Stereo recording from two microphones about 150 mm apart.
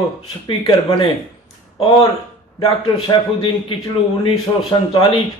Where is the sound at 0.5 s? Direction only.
35° left (ahead or behind).